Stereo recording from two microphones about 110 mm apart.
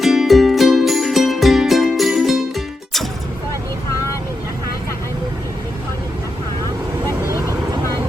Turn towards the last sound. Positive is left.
turn(degrees=-35)  # may be behind; listen again after turning